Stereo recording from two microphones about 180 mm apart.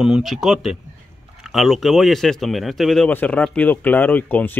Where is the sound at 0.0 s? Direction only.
Centre (ahead or behind).